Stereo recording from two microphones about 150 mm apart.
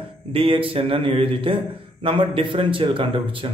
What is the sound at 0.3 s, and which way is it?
A man's voice, 35° right (ahead or behind).